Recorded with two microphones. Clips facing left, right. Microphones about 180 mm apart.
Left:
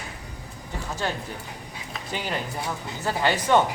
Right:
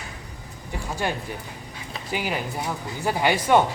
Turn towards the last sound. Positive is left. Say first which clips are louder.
# right 2 dB
turn(degrees=-10)  # may be behind; listen again after turning